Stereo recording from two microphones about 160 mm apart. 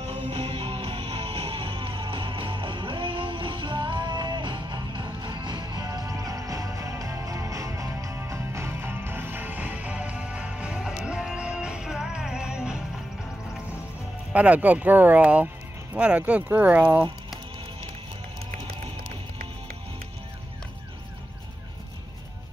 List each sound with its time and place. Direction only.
0.0 s music: 35° right (ahead or behind); by 12.7 s 5° right (ahead or behind)
14.3 s speech: 10° right (ahead or behind)